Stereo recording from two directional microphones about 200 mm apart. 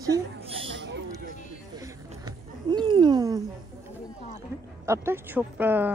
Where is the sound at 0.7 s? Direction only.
60° right (ahead or behind).